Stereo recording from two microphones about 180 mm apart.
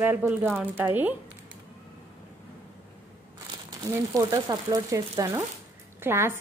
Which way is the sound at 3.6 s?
20° right (ahead or behind).